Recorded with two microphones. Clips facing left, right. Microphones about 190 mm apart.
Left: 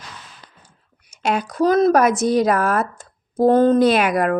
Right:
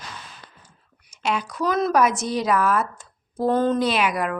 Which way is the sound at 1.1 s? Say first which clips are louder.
Left 4 dB; 50° left (ahead or behind).